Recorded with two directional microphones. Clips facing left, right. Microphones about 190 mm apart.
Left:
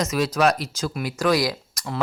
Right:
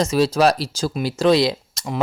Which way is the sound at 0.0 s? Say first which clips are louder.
Right 4 dB; 30° right (ahead or behind).